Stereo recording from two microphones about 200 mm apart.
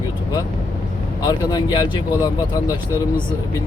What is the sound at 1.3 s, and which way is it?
Speech, 20° left (ahead or behind).